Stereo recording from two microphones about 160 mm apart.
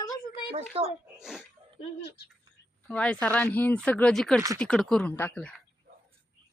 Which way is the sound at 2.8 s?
5° left (ahead or behind).